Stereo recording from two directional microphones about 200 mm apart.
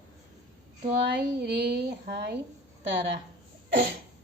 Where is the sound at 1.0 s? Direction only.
60° right (ahead or behind).